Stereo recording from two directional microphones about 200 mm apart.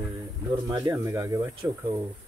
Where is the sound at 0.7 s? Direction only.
15° right (ahead or behind).